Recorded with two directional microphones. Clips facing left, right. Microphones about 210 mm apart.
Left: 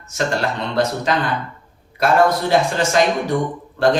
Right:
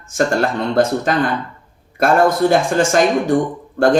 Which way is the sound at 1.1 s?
50° right (ahead or behind).